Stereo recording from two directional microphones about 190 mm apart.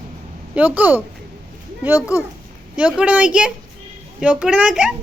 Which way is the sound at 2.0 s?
15° left (ahead or behind).